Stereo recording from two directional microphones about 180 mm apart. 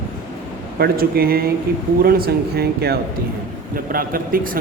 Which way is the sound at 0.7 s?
55° right (ahead or behind).